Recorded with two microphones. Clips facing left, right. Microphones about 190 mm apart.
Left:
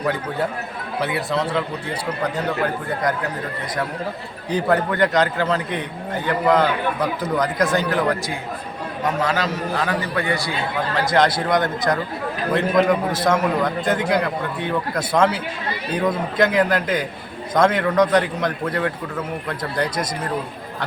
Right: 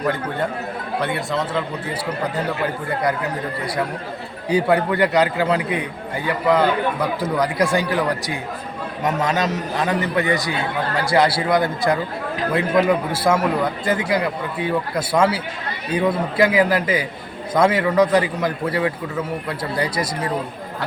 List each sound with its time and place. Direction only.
0.0 s a man's voice: centre (ahead or behind)
4.4 s a man's voice: 10° right (ahead or behind)
9.2 s a man's voice: 20° right (ahead or behind)
11.1 s a man's voice: 10° right (ahead or behind)